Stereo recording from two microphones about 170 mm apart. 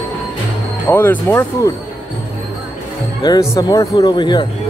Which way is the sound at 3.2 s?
25° left (ahead or behind).